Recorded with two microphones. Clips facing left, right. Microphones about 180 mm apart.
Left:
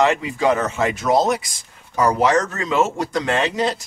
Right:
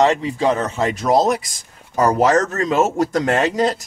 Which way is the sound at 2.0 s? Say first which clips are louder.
Right 2 dB; 45° right (ahead or behind).